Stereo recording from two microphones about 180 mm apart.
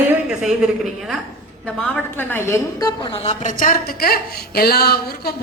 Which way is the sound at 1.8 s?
10° left (ahead or behind).